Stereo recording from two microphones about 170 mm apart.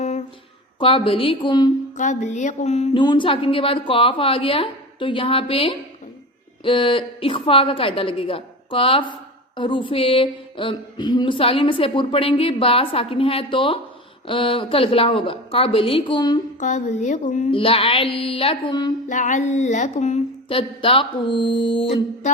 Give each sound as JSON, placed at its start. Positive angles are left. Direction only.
{"t": 0.0, "sound": "a sound", "side_deg": 40}
{"t": 0.8, "sound": "speech", "side_deg": 30}
{"t": 2.0, "sound": "speech", "side_deg": 45}
{"t": 3.0, "sound": "speech", "side_deg": 30}
{"t": 16.6, "sound": "speech", "side_deg": 45}
{"t": 17.5, "sound": "speech", "side_deg": 35}
{"t": 19.0, "sound": "speech", "side_deg": 45}